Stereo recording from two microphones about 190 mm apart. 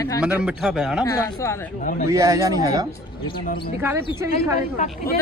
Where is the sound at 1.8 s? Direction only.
45° left (ahead or behind).